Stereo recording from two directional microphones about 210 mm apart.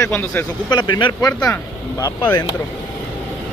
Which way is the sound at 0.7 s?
20° left (ahead or behind).